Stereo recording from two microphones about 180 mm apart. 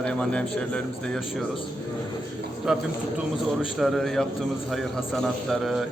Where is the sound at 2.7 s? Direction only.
Centre (ahead or behind).